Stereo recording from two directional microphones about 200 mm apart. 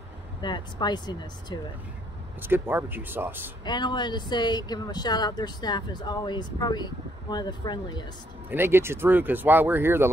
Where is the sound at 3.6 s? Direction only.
20° left (ahead or behind).